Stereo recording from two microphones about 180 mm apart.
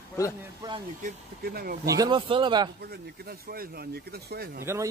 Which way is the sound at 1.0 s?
60° right (ahead or behind).